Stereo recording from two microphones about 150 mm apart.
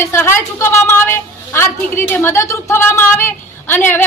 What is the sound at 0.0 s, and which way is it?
A woman's voice, 15° left (ahead or behind).